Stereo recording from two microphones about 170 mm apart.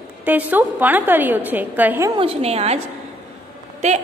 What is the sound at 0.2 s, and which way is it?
A woman's voice, 10° right (ahead or behind).